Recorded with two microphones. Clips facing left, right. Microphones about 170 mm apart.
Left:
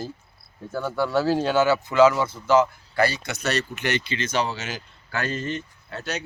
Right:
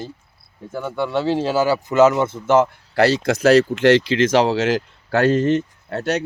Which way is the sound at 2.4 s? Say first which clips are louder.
Right 2 dB; 50° right (ahead or behind).